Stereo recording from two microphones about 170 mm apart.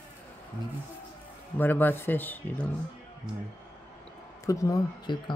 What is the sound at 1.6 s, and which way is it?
Speech, 10° left (ahead or behind).